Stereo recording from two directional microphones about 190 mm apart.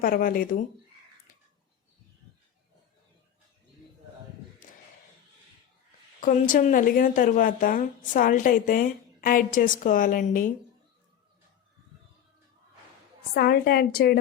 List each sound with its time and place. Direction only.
0.0 s a woman's voice: 50° left (ahead or behind)
6.1 s a woman's voice: 45° left (ahead or behind)
13.3 s a woman's voice: 55° left (ahead or behind)